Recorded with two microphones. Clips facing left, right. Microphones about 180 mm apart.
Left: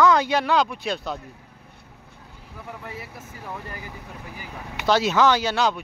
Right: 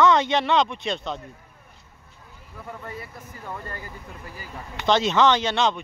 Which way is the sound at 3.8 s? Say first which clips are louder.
Left 1 dB; 70° left (ahead or behind).